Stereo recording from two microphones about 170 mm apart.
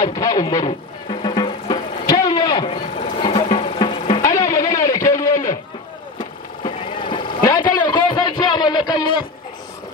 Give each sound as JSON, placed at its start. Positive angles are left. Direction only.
{"t": 0.0, "sound": "speech", "side_deg": 20}
{"t": 0.7, "sound": "music", "side_deg": 30}
{"t": 3.0, "sound": "sewing machine", "side_deg": 35}
{"t": 4.0, "sound": "music", "side_deg": 45}
{"t": 4.3, "sound": "a sound", "side_deg": 20}
{"t": 6.1, "sound": "vehicle", "side_deg": 30}
{"t": 7.4, "sound": "a sound", "side_deg": 25}